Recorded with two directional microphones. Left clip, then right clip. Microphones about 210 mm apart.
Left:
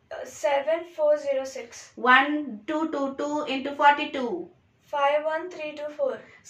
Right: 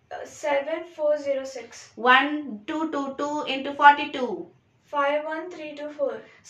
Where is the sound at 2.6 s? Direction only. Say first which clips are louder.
Even; 5° right (ahead or behind).